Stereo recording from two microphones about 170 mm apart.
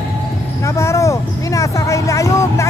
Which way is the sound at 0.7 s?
15° left (ahead or behind).